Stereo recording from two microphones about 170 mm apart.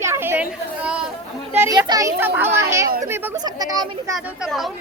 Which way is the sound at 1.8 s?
20° right (ahead or behind).